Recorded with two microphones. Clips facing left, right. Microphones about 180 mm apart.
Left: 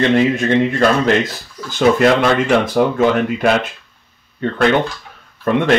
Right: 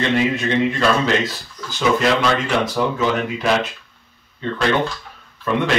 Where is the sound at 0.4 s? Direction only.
50° left (ahead or behind).